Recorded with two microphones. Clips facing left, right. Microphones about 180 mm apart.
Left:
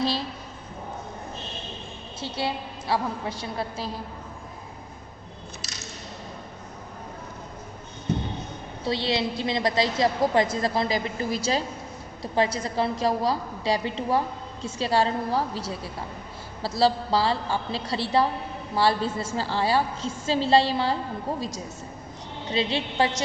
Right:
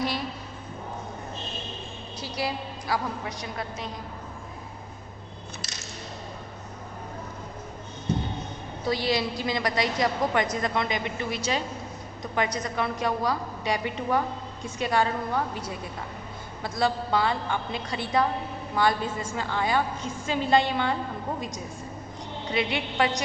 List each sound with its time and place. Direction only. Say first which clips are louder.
0.0 s a sound: left 2 dB; 30° left (ahead or behind)
2.2 s a woman's voice: left 2 dB; 25° left (ahead or behind)
8.8 s a woman's voice: even; 25° left (ahead or behind)
16.6 s a woman's voice: left 4 dB; 30° left (ahead or behind)
22.5 s a woman's voice: left 2 dB; 30° left (ahead or behind)